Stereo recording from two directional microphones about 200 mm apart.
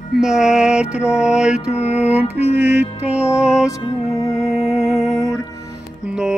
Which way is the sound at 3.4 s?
5° right (ahead or behind).